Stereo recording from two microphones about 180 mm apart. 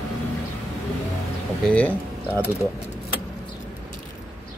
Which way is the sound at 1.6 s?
5° left (ahead or behind).